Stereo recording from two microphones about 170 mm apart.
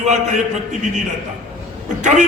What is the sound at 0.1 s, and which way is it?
A man's voice, 45° right (ahead or behind).